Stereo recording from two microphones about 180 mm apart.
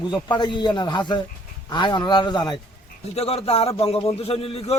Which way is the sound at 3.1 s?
35° left (ahead or behind).